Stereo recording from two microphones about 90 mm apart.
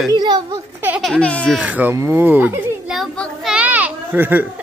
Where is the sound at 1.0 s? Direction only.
10° left (ahead or behind).